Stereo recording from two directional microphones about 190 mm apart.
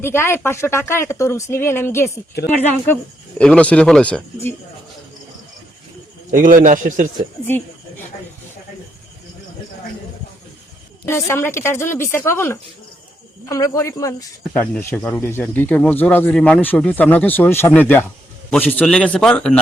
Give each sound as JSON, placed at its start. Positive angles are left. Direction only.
{"t": 0.0, "sound": "a man's voice", "side_deg": 10}
{"t": 6.3, "sound": "a man's voice", "side_deg": -45}
{"t": 11.0, "sound": "a man's voice", "side_deg": 15}